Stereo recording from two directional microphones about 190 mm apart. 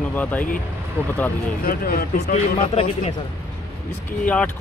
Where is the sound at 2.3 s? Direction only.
30° left (ahead or behind).